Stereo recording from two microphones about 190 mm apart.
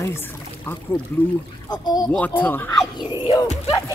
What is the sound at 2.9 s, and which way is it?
Speech, 25° left (ahead or behind).